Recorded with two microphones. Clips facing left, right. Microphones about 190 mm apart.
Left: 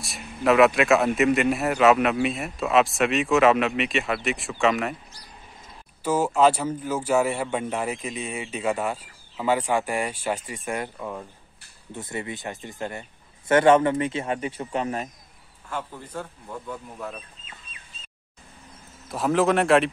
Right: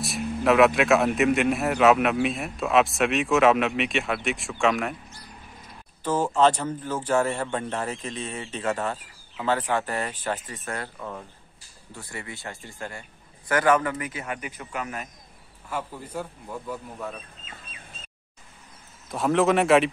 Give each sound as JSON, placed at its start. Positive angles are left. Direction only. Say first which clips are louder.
{"t": 0.0, "sound": "speech", "louder": "right 1 dB", "side_deg": 0}
{"t": 6.0, "sound": "a man's voice", "louder": "left 1 dB", "side_deg": 10}
{"t": 11.9, "sound": "speech", "louder": "left 6 dB", "side_deg": 20}
{"t": 15.7, "sound": "speech", "louder": "right 1 dB", "side_deg": -10}
{"t": 19.0, "sound": "speech", "louder": "even", "side_deg": 0}